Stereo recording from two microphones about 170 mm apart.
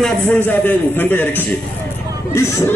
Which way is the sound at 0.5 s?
10° left (ahead or behind).